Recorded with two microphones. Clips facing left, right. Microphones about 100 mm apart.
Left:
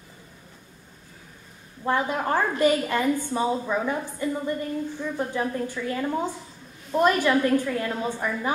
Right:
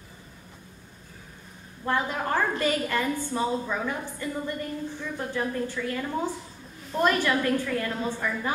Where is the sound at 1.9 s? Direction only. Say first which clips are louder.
Left 3 dB; 15° left (ahead or behind).